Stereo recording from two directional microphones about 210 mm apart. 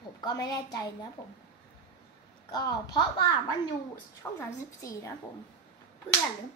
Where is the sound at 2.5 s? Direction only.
20° left (ahead or behind).